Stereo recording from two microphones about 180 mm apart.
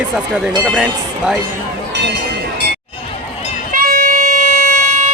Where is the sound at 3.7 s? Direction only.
50° right (ahead or behind).